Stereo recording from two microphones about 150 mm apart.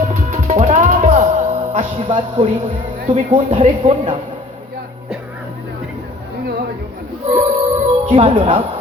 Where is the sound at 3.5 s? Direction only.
40° right (ahead or behind).